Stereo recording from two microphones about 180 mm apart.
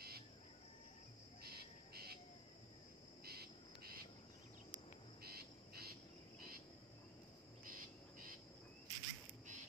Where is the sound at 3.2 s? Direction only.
60° right (ahead or behind).